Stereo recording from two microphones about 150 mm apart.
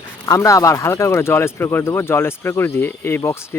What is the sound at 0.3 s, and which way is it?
Speech, 20° left (ahead or behind).